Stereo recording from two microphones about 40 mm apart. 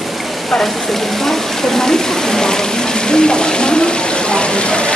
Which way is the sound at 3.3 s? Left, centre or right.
Left.